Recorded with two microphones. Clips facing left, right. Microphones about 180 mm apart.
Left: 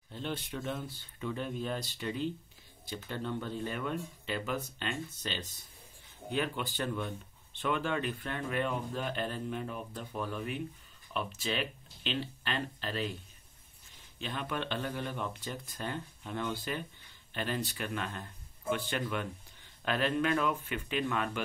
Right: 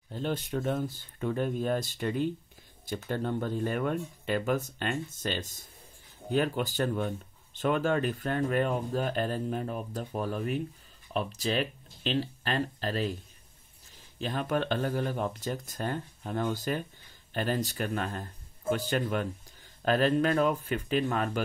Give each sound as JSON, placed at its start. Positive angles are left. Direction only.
{"t": 0.1, "sound": "speech", "side_deg": -40}
{"t": 14.1, "sound": "speech", "side_deg": -40}